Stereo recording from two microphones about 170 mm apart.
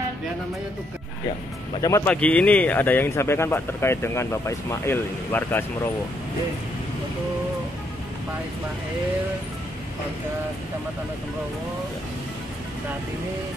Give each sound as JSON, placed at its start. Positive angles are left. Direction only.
{"t": 1.8, "sound": "speech", "side_deg": 20}
{"t": 2.0, "sound": "speech", "side_deg": 10}